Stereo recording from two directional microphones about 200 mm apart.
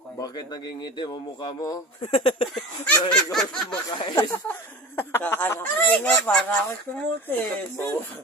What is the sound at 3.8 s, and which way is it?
Speech, 15° left (ahead or behind).